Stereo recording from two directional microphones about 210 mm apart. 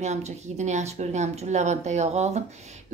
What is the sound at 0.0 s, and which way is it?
A woman's voice, 35° right (ahead or behind).